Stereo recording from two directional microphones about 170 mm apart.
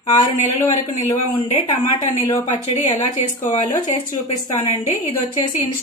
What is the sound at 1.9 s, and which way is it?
A woman's voice, 25° left (ahead or behind).